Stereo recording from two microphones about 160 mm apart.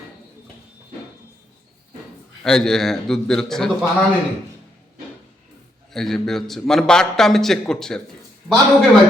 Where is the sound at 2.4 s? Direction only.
5° left (ahead or behind).